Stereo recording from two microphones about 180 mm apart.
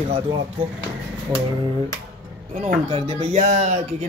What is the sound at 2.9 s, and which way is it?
Speech, 35° right (ahead or behind).